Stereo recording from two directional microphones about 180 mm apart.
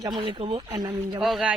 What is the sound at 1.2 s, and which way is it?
Speech, centre (ahead or behind).